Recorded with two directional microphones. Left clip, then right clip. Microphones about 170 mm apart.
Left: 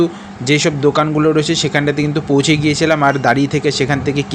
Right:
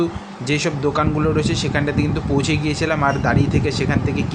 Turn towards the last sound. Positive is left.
turn(degrees=30)  # may be behind; listen again after turning